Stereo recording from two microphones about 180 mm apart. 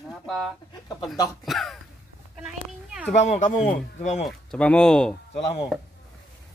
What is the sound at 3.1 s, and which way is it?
Speech, 40° left (ahead or behind).